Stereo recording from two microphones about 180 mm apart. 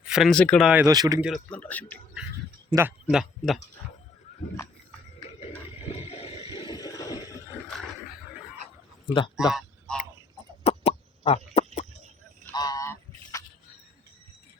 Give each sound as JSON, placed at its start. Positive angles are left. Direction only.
{"t": 0.1, "sound": "speech", "side_deg": 0}
{"t": 0.9, "sound": "speech", "side_deg": -20}
{"t": 1.2, "sound": "speech", "side_deg": 5}
{"t": 2.7, "sound": "speech", "side_deg": -25}
{"t": 3.1, "sound": "speech", "side_deg": 0}
{"t": 5.4, "sound": "a sound", "side_deg": 35}
{"t": 9.3, "sound": "speech", "side_deg": 0}
{"t": 10.6, "sound": "chicken", "side_deg": 35}
{"t": 11.5, "sound": "a sound", "side_deg": 40}
{"t": 12.5, "sound": "honk", "side_deg": 20}